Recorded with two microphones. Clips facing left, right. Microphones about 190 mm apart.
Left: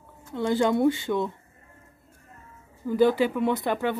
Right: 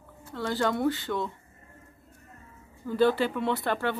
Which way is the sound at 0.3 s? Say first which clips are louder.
Left 5 dB; 15° left (ahead or behind).